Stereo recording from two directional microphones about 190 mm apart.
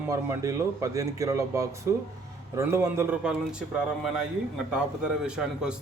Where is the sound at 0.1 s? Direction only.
15° right (ahead or behind).